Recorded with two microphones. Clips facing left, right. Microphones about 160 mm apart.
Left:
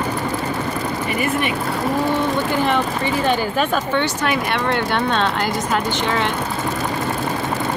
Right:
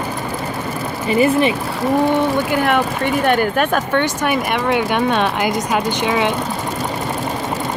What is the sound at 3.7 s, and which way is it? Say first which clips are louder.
Speech: right 2 dB; 10° right (ahead or behind).